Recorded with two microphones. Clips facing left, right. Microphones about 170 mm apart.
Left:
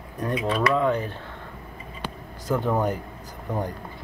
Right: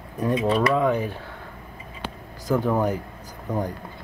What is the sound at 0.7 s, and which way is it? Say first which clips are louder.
Speech: right 1 dB; 10° right (ahead or behind).